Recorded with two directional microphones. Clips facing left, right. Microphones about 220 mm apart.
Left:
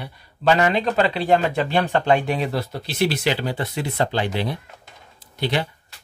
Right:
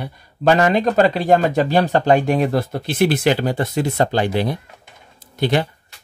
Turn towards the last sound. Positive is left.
turn(degrees=-45)  # may be behind; listen again after turning